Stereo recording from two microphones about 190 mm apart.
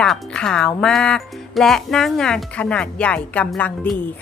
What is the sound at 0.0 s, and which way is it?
A woman's voice, 5° left (ahead or behind).